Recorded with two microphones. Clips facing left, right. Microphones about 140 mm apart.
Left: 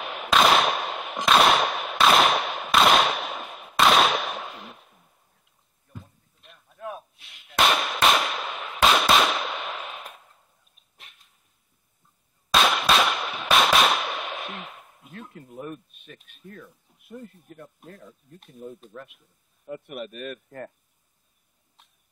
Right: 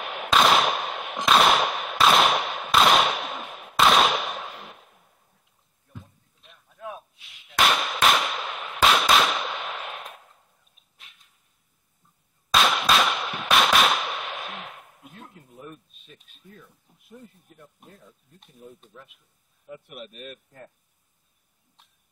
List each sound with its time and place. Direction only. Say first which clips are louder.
0.0 s a sound: even; centre (ahead or behind)
5.9 s artillery fire: left 1 dB; centre (ahead or behind)
12.5 s firecracker: even; centre (ahead or behind)
15.5 s a sound: left 8 dB; 55° left (ahead or behind)
16.3 s speech: left 7 dB; 65° left (ahead or behind)
18.9 s speech: left 7 dB; 60° left (ahead or behind)
21.8 s cough: left 1 dB; centre (ahead or behind)